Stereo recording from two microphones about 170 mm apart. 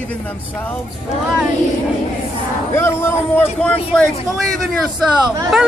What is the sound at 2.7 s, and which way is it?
Speech, 15° left (ahead or behind).